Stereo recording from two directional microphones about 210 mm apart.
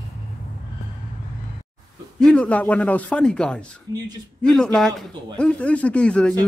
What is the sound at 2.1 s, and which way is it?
A man's voice, 5° left (ahead or behind).